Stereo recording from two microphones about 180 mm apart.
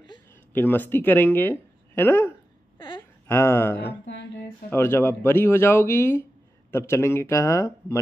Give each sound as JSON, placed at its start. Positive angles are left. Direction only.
{"t": 0.5, "sound": "speech", "side_deg": 10}
{"t": 4.0, "sound": "a sound", "side_deg": 85}
{"t": 4.6, "sound": "speech", "side_deg": 15}